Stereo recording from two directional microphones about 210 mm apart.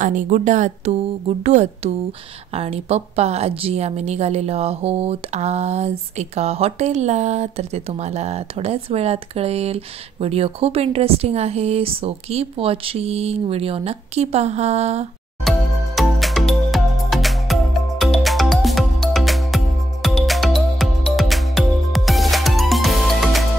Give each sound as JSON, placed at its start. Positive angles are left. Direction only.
{"t": 0.0, "sound": "a woman's voice", "side_deg": -40}
{"t": 15.4, "sound": "music", "side_deg": 0}